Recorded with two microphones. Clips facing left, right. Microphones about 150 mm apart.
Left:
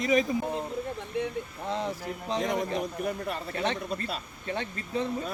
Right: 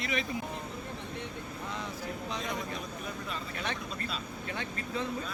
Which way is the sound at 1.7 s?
30° left (ahead or behind).